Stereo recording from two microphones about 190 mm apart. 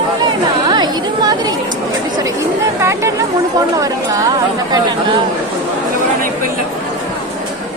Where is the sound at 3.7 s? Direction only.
20° right (ahead or behind).